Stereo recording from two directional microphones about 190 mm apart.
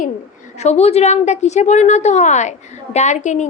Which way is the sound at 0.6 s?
35° left (ahead or behind).